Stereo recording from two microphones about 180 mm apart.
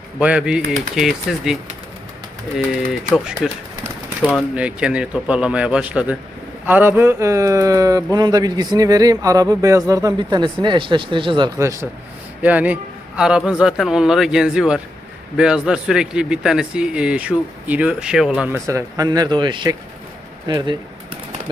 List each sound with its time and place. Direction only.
0.2 s a man's voice: 5° right (ahead or behind)
3.4 s a man's voice: centre (ahead or behind); by 20.7 s 25° right (ahead or behind)